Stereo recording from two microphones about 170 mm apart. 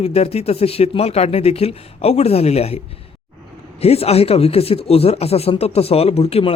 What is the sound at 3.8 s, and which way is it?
A man's voice, 35° left (ahead or behind).